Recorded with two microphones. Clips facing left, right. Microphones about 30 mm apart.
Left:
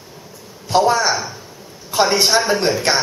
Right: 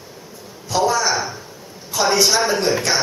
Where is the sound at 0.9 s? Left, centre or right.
Left.